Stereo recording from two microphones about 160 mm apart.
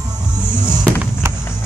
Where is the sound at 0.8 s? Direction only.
10° right (ahead or behind).